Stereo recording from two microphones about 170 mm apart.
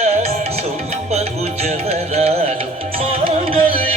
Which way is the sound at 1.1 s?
40° right (ahead or behind).